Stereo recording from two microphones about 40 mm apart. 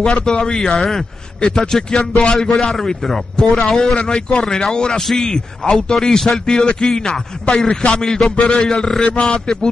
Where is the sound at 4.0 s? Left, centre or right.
Left.